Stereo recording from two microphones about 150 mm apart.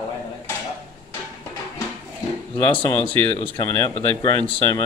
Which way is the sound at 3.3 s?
35° left (ahead or behind).